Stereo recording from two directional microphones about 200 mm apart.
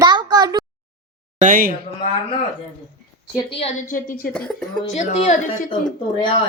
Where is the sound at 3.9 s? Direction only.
45° left (ahead or behind).